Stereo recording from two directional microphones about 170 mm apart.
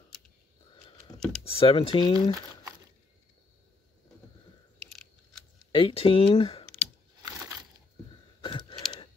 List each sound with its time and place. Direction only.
1.1 s computer keyboard: 20° left (ahead or behind)
1.4 s speech: 35° left (ahead or behind)
5.7 s speech: 30° left (ahead or behind)
8.4 s a sound: 25° left (ahead or behind)